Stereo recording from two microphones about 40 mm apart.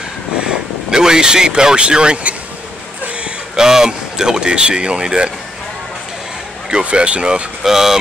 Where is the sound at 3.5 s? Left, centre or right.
Centre.